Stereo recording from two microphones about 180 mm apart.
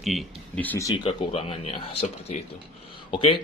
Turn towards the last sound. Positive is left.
turn(degrees=30)  # may be behind; listen again after turning